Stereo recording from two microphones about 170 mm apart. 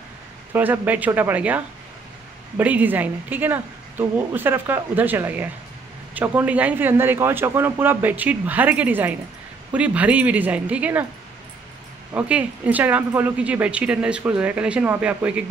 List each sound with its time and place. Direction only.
0.5 s speech: 10° right (ahead or behind)
12.1 s speech: 10° right (ahead or behind)